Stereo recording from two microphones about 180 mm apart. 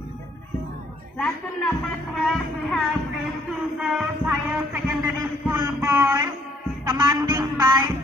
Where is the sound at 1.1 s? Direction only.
5° left (ahead or behind).